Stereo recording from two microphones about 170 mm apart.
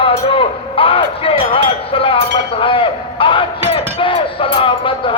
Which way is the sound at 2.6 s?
30° left (ahead or behind).